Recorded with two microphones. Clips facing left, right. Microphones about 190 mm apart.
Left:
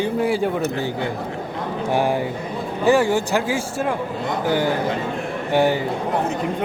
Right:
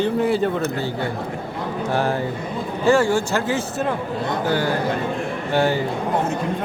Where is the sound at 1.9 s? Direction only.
15° left (ahead or behind).